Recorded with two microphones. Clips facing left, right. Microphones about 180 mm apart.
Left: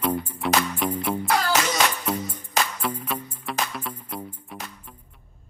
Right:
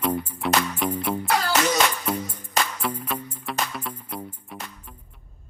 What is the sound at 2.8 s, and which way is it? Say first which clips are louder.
Music: even; 5° left (ahead or behind).